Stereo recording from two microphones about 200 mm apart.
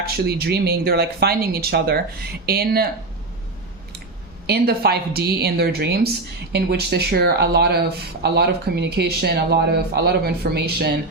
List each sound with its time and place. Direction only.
0.0 s speech: 50° right (ahead or behind)
4.4 s speech: 55° right (ahead or behind)